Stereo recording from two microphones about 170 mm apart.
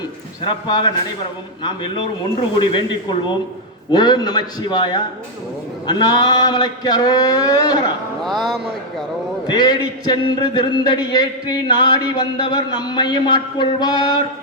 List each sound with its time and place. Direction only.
0.4 s speech: 30° left (ahead or behind)
2.6 s speech: 30° left (ahead or behind)
9.5 s speech: 25° left (ahead or behind)